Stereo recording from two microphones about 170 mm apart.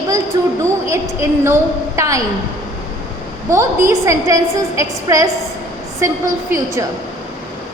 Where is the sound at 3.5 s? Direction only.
15° right (ahead or behind).